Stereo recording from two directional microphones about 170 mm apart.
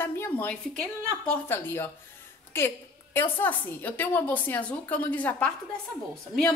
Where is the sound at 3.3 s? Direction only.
10° left (ahead or behind).